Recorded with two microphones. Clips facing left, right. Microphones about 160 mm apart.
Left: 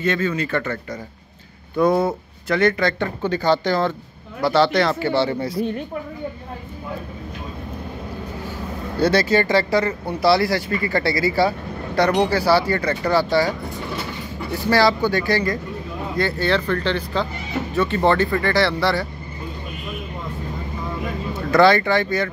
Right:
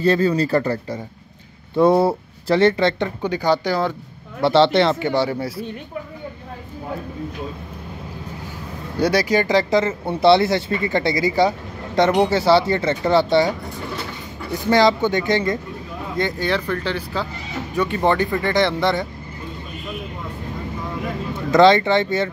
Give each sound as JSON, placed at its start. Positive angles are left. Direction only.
{"t": 0.0, "sound": "speech", "side_deg": -35}
{"t": 4.4, "sound": "speech", "side_deg": -25}
{"t": 9.0, "sound": "speech", "side_deg": -10}
{"t": 21.5, "sound": "speech", "side_deg": -20}